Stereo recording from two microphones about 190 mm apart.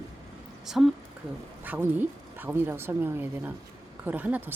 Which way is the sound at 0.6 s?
Centre (ahead or behind).